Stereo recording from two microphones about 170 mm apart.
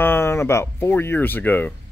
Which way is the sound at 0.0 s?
15° left (ahead or behind).